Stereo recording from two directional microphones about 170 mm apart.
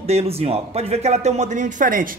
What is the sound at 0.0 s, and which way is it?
Speech, 35° right (ahead or behind).